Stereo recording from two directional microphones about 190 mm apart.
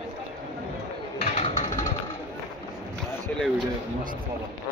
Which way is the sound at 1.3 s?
35° left (ahead or behind).